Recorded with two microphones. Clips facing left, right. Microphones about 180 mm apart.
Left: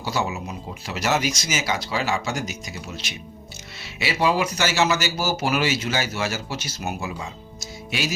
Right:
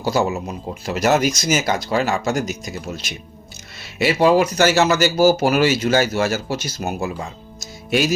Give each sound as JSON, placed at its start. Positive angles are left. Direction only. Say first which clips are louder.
{"t": 0.0, "sound": "speech", "louder": "right 7 dB", "side_deg": -45}